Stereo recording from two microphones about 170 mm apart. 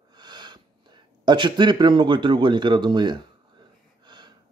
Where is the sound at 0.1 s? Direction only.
25° right (ahead or behind).